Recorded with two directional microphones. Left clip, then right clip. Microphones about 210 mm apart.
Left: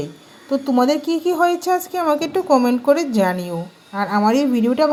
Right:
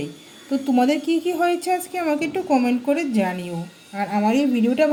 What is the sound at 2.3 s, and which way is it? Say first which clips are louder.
Speech: left 5 dB; 90° left.